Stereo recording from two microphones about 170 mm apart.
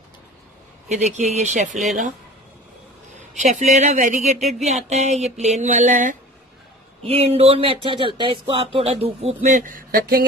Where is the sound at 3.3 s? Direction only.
45° right (ahead or behind).